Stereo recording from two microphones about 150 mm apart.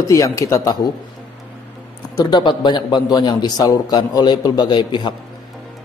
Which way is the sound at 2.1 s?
30° left (ahead or behind).